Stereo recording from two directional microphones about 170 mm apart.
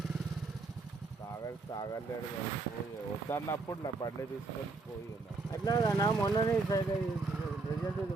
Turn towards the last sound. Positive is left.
turn(degrees=20)  # may be behind; listen again after turning